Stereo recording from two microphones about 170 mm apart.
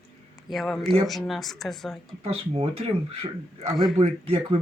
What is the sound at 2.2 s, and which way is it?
Speech, 40° right (ahead or behind).